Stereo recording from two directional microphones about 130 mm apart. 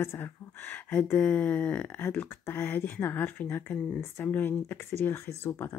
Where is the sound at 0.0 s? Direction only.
15° left (ahead or behind).